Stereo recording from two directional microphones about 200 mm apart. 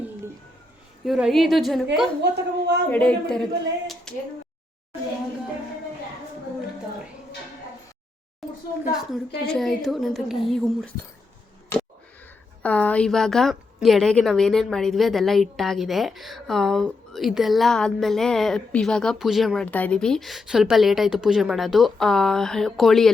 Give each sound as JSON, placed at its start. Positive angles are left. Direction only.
{"t": 1.0, "sound": "a woman's voice", "side_deg": 0}
{"t": 2.2, "sound": "a woman's voice", "side_deg": -55}
{"t": 2.9, "sound": "a woman's voice", "side_deg": 5}
{"t": 4.1, "sound": "a sound", "side_deg": 5}
{"t": 8.4, "sound": "a sound", "side_deg": 0}
{"t": 8.9, "sound": "a woman's voice", "side_deg": 0}
{"t": 12.6, "sound": "a woman's voice", "side_deg": 5}